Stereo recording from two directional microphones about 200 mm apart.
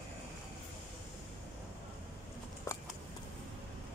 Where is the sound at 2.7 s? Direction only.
15° left (ahead or behind).